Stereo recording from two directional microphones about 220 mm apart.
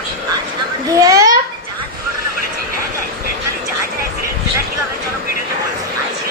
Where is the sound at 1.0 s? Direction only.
15° right (ahead or behind).